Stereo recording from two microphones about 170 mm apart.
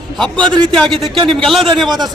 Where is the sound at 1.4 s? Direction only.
Centre (ahead or behind).